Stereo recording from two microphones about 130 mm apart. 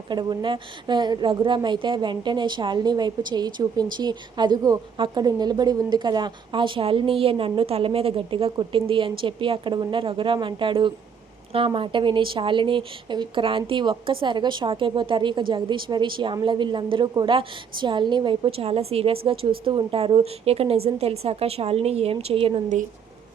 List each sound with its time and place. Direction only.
0.1 s a woman's voice: 35° right (ahead or behind)